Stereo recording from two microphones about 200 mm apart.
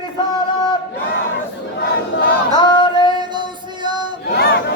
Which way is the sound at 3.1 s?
20° right (ahead or behind).